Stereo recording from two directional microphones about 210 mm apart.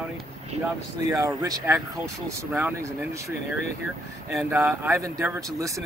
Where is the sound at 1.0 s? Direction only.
15° right (ahead or behind).